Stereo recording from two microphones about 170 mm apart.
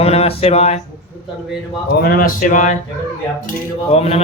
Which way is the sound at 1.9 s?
60° left (ahead or behind).